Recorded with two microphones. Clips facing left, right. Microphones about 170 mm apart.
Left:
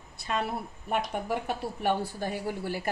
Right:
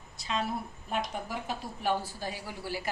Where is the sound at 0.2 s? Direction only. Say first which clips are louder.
Left 2 dB; 60° left (ahead or behind).